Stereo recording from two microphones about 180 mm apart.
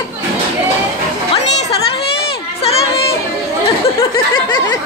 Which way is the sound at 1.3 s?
30° left (ahead or behind).